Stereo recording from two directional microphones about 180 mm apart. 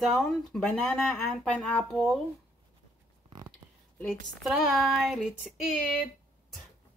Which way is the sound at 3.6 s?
20° right (ahead or behind).